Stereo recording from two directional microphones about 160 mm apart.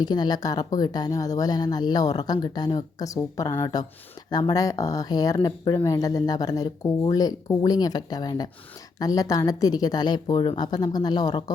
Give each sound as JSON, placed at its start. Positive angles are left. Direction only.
{"t": 0.0, "sound": "speech", "side_deg": 25}